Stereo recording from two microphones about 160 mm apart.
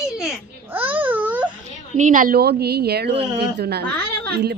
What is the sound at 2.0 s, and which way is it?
Speech, 55° right (ahead or behind).